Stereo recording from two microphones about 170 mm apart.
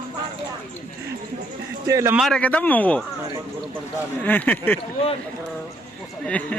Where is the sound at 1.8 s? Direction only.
15° right (ahead or behind).